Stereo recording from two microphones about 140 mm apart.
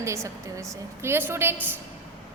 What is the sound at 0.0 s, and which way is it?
A woman's voice, 20° right (ahead or behind).